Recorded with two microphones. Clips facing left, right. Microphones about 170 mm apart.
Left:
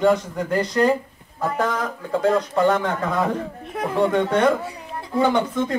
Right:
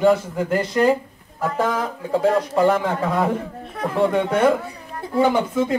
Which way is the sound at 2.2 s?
5° right (ahead or behind).